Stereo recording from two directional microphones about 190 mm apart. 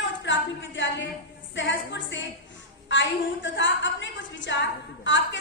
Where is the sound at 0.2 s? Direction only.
75° left (ahead or behind).